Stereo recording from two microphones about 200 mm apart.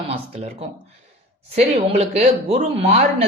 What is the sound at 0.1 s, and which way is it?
Speech, 30° right (ahead or behind).